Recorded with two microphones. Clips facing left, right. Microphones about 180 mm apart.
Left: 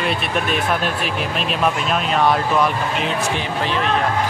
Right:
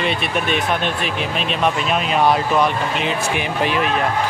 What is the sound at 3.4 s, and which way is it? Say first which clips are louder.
Speech: right 2 dB; 10° right (ahead or behind).